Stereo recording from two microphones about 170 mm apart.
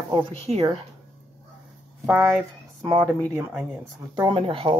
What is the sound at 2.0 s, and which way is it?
Speech, 10° right (ahead or behind).